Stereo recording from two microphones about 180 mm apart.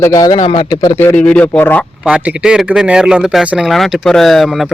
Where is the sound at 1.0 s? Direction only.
10° left (ahead or behind).